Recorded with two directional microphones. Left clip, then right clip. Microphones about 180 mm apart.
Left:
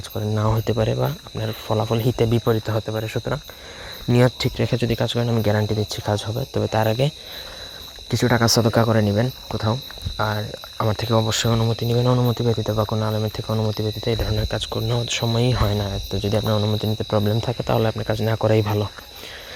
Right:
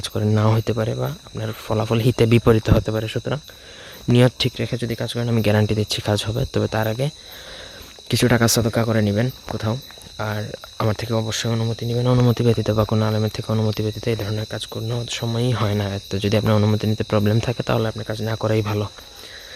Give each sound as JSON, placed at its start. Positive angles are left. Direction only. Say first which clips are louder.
{"t": 0.0, "sound": "speech", "louder": "right 3 dB", "side_deg": -30}
{"t": 0.6, "sound": "speech", "louder": "left 1 dB", "side_deg": -10}
{"t": 0.9, "sound": "speech", "louder": "left 3 dB", "side_deg": 0}
{"t": 1.5, "sound": "speech", "louder": "even", "side_deg": -15}
{"t": 4.5, "sound": "speech", "louder": "left 3 dB", "side_deg": 0}
{"t": 5.3, "sound": "speech", "louder": "right 2 dB", "side_deg": -25}
{"t": 6.7, "sound": "speech", "louder": "left 3 dB", "side_deg": -5}
{"t": 8.1, "sound": "speech", "louder": "right 1 dB", "side_deg": -20}
{"t": 8.4, "sound": "speech", "louder": "left 2 dB", "side_deg": -5}
{"t": 9.0, "sound": "speech", "louder": "left 1 dB", "side_deg": -15}
{"t": 12.2, "sound": "speech", "louder": "right 3 dB", "side_deg": -30}
{"t": 15.5, "sound": "speech", "louder": "even", "side_deg": -15}
{"t": 17.8, "sound": "speech", "louder": "left 3 dB", "side_deg": 5}
{"t": 18.3, "sound": "speech", "louder": "left 1 dB", "side_deg": -5}